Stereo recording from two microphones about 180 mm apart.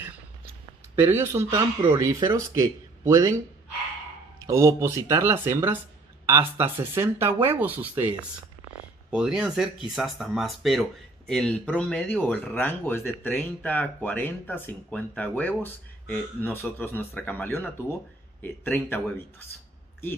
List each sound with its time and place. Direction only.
0.9 s speech: 15° right (ahead or behind)
4.5 s speech: 15° right (ahead or behind)
9.1 s speech: 5° right (ahead or behind); by 19.1 s 10° left (ahead or behind)